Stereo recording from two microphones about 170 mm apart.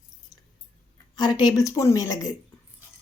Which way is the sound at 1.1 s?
25° left (ahead or behind).